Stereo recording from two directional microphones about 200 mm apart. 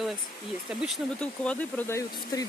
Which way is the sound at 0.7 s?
5° right (ahead or behind).